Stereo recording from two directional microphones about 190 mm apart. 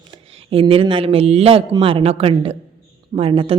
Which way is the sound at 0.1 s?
30° right (ahead or behind).